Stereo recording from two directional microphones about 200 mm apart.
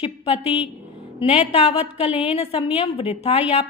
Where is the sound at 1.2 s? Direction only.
30° left (ahead or behind).